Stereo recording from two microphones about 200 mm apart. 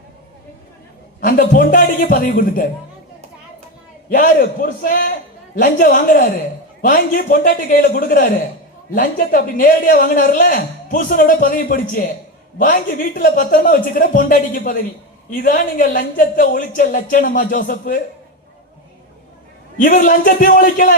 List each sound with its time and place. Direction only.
1.2 s a man's voice: 40° left (ahead or behind)
4.1 s a man's voice: 40° left (ahead or behind)
19.7 s a man's voice: 40° left (ahead or behind)